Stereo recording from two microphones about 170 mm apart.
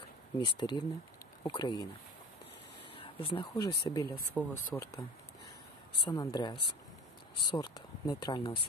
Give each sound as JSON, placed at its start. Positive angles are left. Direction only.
{"t": 0.4, "sound": "speech", "side_deg": 25}
{"t": 3.0, "sound": "speech", "side_deg": 30}
{"t": 6.0, "sound": "speech", "side_deg": 25}